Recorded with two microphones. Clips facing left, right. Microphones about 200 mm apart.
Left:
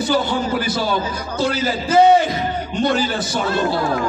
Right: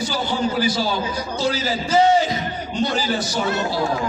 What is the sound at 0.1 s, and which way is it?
A man's voice, 55° left (ahead or behind).